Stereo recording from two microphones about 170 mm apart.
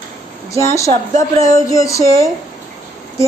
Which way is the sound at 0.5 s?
20° left (ahead or behind).